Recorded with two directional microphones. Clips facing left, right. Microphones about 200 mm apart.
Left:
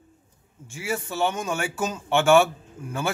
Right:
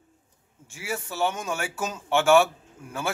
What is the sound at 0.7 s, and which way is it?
Speech, 5° right (ahead or behind).